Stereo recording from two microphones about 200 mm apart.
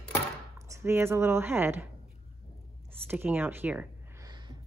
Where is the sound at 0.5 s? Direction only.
15° right (ahead or behind).